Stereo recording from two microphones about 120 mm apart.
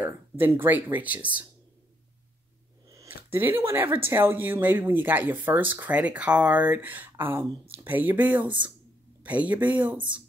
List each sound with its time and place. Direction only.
0.0 s speech: 15° right (ahead or behind)
2.9 s speech: 20° right (ahead or behind)